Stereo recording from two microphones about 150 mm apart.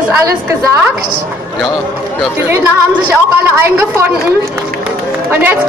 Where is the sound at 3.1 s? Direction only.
15° right (ahead or behind).